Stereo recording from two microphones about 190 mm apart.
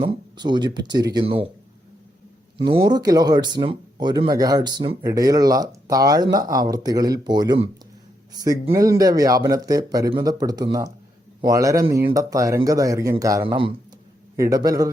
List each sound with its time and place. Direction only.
0.0 s speech: 25° right (ahead or behind)
2.6 s speech: 25° right (ahead or behind)